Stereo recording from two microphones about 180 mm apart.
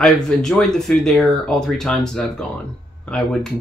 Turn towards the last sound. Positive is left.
turn(degrees=5)  # may be behind; listen again after turning